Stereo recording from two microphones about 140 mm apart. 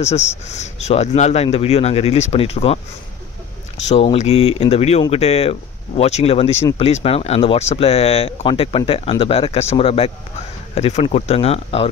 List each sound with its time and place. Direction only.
0.0 s speech: 50° left (ahead or behind)